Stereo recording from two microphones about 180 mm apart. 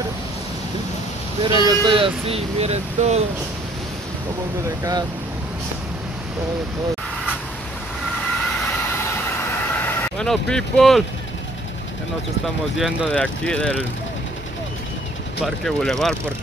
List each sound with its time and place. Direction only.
1.4 s speech: 25° right (ahead or behind)
9.8 s vehicle: 15° left (ahead or behind)
10.2 s speech: centre (ahead or behind)
12.7 s speech: centre (ahead or behind)
15.4 s speech: centre (ahead or behind)